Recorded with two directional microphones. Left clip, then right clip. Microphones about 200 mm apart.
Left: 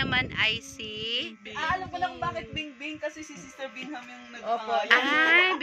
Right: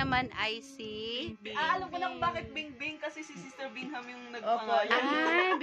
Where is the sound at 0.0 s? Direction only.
30° right (ahead or behind); by 1.3 s 15° right (ahead or behind).